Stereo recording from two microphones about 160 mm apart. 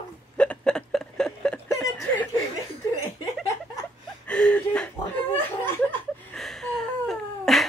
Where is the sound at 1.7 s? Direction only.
15° left (ahead or behind).